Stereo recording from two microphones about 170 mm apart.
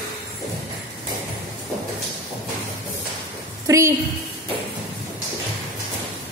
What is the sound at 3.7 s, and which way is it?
Speech, 15° right (ahead or behind).